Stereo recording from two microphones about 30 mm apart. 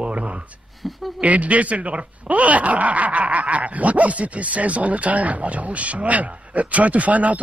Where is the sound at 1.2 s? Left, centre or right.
Right.